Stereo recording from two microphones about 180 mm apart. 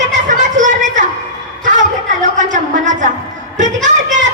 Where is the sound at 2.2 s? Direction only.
45° right (ahead or behind).